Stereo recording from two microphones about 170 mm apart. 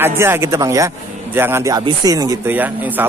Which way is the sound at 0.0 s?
15° right (ahead or behind).